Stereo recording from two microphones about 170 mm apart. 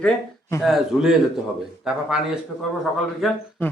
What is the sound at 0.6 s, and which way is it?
A man's voice, centre (ahead or behind).